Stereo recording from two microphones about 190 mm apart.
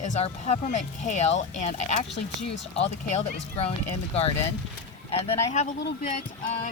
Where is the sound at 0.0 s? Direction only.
40° left (ahead or behind).